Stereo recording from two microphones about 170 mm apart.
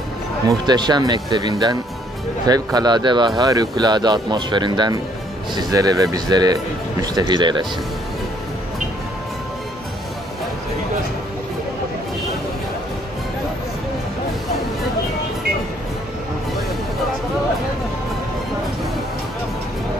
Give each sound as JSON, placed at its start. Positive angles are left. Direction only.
{"t": 0.5, "sound": "speech", "side_deg": -25}